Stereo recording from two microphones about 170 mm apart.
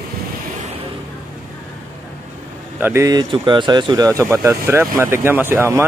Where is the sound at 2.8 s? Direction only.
15° right (ahead or behind).